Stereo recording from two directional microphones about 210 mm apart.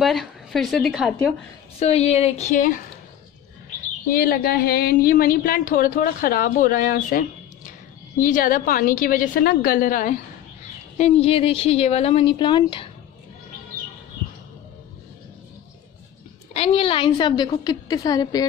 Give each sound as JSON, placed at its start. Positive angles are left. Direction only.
{"t": 0.0, "sound": "a woman's voice", "side_deg": 0}
{"t": 1.8, "sound": "a woman's voice", "side_deg": 30}
{"t": 4.1, "sound": "a woman's voice", "side_deg": 45}
{"t": 11.0, "sound": "speech", "side_deg": 30}
{"t": 16.5, "sound": "speech", "side_deg": 25}